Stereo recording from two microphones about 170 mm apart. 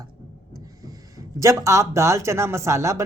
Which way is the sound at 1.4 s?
20° right (ahead or behind).